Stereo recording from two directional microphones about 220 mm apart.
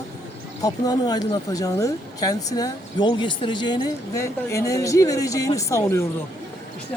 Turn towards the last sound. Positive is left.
turn(degrees=15)  # may be behind; listen again after turning